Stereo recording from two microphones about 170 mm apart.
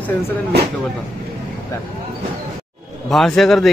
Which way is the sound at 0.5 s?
75° right (ahead or behind).